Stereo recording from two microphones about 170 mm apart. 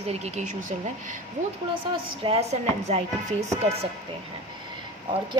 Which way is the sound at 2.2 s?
35° right (ahead or behind).